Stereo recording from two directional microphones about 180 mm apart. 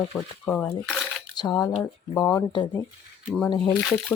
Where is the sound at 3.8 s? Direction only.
Centre (ahead or behind).